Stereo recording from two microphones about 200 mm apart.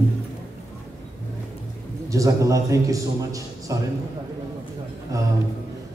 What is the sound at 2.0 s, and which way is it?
A man's voice, 15° right (ahead or behind).